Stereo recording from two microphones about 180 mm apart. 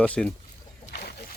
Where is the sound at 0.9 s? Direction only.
60° left (ahead or behind).